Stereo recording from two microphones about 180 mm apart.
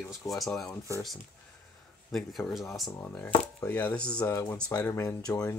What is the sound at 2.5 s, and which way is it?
Speech, centre (ahead or behind).